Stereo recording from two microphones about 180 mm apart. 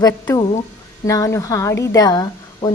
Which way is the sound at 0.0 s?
20° left (ahead or behind).